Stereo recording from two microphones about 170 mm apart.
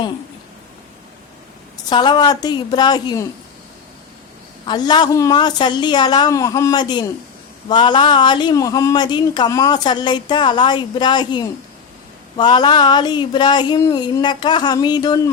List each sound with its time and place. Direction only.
1.9 s a man's voice: 25° left (ahead or behind)
4.6 s a man's voice: 25° left (ahead or behind)